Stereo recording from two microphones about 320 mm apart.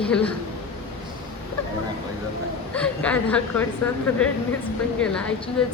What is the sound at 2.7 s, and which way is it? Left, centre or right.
Speech, centre.